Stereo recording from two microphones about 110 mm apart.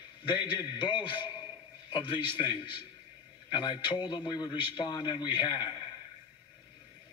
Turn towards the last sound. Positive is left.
turn(degrees=45)  # may be behind; listen again after turning